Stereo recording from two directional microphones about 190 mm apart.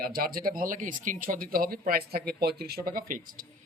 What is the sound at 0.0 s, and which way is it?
A man's voice, 50° right (ahead or behind).